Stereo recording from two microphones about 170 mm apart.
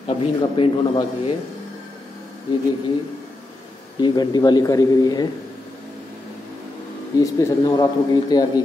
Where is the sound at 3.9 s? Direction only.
25° left (ahead or behind).